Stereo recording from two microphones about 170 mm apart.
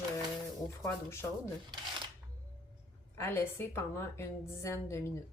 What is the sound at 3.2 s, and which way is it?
A woman's voice, 15° left (ahead or behind).